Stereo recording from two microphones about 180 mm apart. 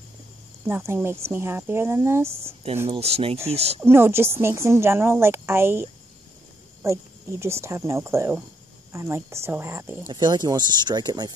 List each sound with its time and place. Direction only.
0.7 s a woman's voice: 10° right (ahead or behind)
2.9 s speech: 35° right (ahead or behind)
3.8 s a woman's voice: 15° right (ahead or behind)